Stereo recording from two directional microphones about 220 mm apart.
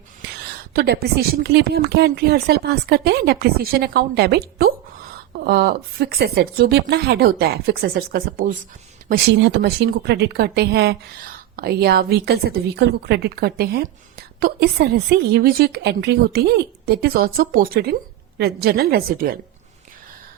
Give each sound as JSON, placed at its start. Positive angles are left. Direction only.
{"t": 0.7, "sound": "a woman's voice", "side_deg": -45}